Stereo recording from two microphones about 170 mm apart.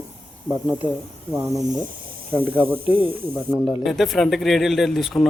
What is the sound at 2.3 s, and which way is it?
Speech, 10° right (ahead or behind).